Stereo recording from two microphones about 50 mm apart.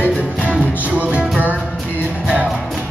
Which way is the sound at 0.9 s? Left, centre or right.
Right.